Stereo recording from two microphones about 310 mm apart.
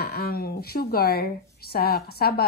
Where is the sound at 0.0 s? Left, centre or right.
Left.